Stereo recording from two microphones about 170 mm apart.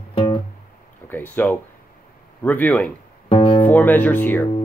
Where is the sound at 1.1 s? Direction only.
10° left (ahead or behind).